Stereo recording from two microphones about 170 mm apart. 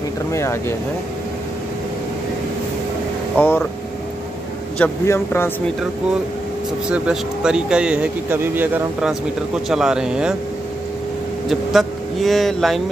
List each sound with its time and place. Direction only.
0.3 s a man's voice: 15° left (ahead or behind)
3.3 s a man's voice: 10° left (ahead or behind)
4.7 s a man's voice: 10° left (ahead or behind)
6.9 s speech: 5° right (ahead or behind)
11.4 s speech: centre (ahead or behind)